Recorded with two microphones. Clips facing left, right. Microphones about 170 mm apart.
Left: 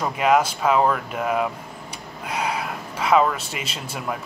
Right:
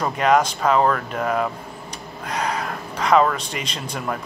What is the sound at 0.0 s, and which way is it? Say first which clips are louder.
Speech: right 1 dB; 5° left (ahead or behind).